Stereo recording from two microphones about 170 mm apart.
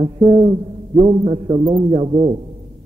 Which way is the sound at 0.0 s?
30° right (ahead or behind).